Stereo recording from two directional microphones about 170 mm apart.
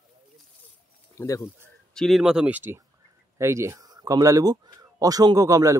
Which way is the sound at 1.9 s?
Centre (ahead or behind).